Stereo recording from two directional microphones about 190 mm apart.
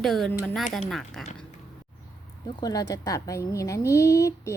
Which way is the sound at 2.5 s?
20° left (ahead or behind).